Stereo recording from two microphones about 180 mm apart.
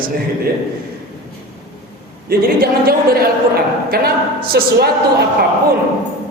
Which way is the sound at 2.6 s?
55° right (ahead or behind).